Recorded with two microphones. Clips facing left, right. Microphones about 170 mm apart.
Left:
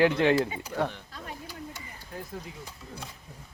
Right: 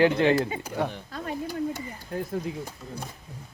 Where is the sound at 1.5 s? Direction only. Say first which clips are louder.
Right 12 dB; 45° right (ahead or behind).